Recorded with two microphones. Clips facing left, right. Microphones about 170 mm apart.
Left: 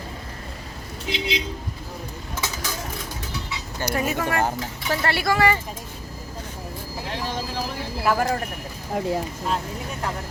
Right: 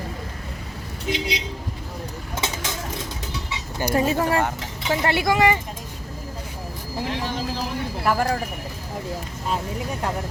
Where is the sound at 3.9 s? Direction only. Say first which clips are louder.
Right 4 dB; 30° right (ahead or behind).